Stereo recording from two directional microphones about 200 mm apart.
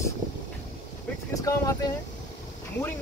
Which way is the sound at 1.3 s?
15° left (ahead or behind).